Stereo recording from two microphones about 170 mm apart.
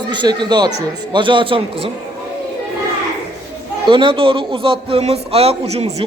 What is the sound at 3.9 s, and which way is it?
A man's voice, 30° right (ahead or behind).